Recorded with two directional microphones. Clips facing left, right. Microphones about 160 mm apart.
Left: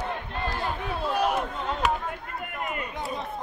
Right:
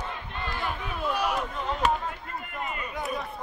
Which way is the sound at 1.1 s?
45° left (ahead or behind).